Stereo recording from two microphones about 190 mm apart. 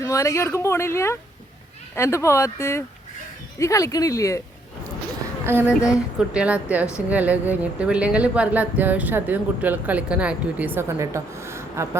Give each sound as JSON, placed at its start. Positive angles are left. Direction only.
{"t": 0.0, "sound": "speech", "side_deg": 15}
{"t": 5.5, "sound": "speech", "side_deg": -10}